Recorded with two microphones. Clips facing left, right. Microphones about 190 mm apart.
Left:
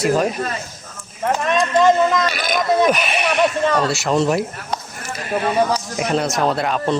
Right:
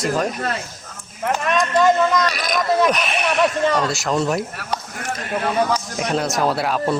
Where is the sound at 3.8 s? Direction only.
Centre (ahead or behind).